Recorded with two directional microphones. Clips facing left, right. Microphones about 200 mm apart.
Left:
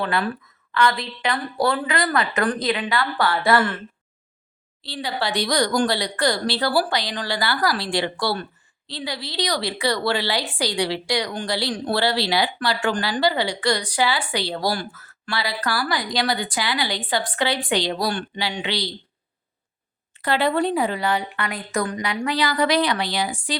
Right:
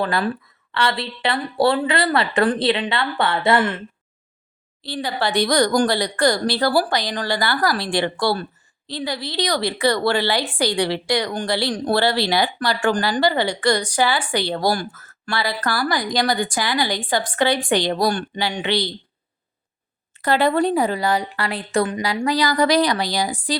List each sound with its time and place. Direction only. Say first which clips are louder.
0.0 s speech: right 2 dB; 40° right (ahead or behind); by 3.8 s 20° right (ahead or behind)
4.8 s a woman's voice: right 3 dB; 50° right (ahead or behind)
20.1 s speech: right 3 dB; 45° right (ahead or behind); by 22.0 s 25° right (ahead or behind)
22.0 s speech: right 3 dB; 35° right (ahead or behind)